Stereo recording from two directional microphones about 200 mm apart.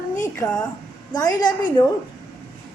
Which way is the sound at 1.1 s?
20° left (ahead or behind).